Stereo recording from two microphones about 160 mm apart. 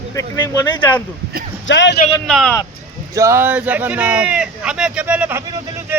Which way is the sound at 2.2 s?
Centre (ahead or behind).